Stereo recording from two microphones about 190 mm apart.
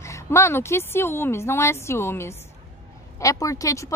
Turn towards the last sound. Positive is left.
turn(degrees=15)  # may be behind; listen again after turning